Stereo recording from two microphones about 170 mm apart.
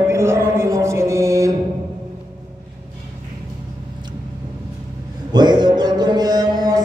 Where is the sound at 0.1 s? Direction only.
15° right (ahead or behind).